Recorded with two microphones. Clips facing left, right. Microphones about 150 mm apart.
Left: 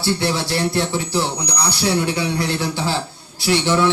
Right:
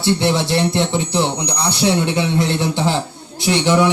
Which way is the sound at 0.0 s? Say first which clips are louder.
Right 4 dB; 20° right (ahead or behind).